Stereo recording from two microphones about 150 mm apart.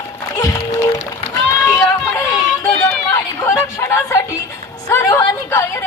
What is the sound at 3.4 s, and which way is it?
A woman's voice, 20° left (ahead or behind).